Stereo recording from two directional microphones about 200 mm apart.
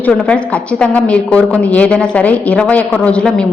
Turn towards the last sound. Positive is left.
turn(degrees=5)  # may be behind; listen again after turning